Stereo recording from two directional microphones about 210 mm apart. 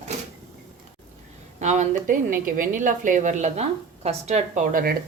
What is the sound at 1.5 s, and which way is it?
Speech, 35° right (ahead or behind).